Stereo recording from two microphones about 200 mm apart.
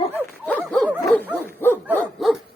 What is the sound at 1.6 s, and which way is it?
Dog, 10° left (ahead or behind).